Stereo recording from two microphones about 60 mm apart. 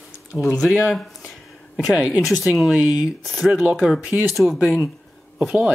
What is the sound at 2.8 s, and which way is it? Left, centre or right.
Speech, right.